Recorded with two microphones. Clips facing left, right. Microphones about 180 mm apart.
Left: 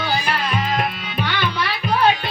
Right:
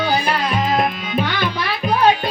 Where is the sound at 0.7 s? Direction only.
40° right (ahead or behind).